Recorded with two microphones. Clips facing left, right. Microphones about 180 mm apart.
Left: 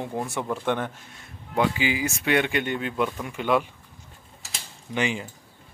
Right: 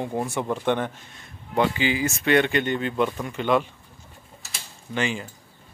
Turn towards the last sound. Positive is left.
turn(degrees=20)  # may be behind; listen again after turning